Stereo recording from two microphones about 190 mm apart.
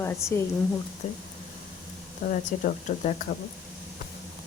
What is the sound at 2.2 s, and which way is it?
Speech, 35° left (ahead or behind).